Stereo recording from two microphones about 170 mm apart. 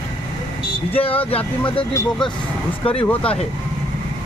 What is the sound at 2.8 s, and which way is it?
Speech, 30° left (ahead or behind).